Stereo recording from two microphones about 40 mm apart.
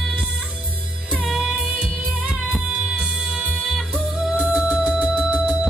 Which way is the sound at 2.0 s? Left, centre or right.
Right.